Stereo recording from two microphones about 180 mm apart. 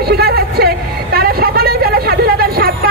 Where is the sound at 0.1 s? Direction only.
60° right (ahead or behind).